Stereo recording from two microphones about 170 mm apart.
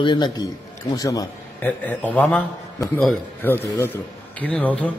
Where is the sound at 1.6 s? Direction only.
10° left (ahead or behind).